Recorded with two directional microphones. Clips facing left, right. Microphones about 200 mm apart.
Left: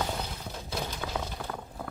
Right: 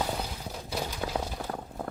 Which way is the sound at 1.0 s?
30° right (ahead or behind).